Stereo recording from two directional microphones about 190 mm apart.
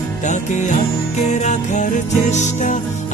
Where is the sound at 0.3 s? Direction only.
40° left (ahead or behind).